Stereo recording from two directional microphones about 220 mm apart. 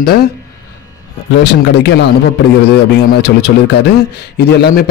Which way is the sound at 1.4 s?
50° left (ahead or behind).